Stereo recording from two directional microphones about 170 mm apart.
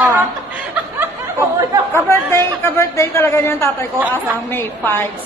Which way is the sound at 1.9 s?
15° left (ahead or behind).